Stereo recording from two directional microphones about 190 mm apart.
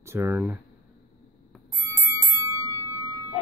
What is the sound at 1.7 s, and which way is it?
Music, 15° right (ahead or behind).